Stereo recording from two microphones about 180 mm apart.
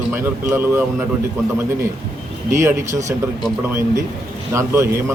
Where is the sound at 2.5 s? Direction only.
15° right (ahead or behind).